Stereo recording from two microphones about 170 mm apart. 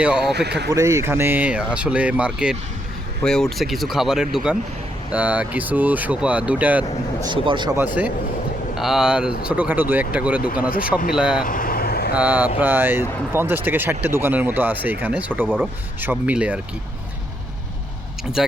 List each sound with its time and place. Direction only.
0.2 s speech: 75° right (ahead or behind)
0.7 s speech: 20° right (ahead or behind)
7.3 s speech: 25° right (ahead or behind)
7.8 s speech: 10° right (ahead or behind)
11.4 s vehicle: 55° left (ahead or behind)
12.1 s speech: 10° right (ahead or behind)
15.4 s speech: 5° left (ahead or behind)
16.0 s speech: 10° right (ahead or behind)
18.4 s speech: 5° right (ahead or behind)